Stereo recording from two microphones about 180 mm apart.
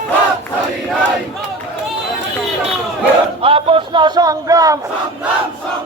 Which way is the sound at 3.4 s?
30° right (ahead or behind).